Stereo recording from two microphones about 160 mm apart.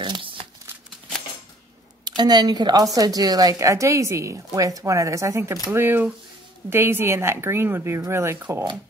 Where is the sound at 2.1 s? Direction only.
25° right (ahead or behind).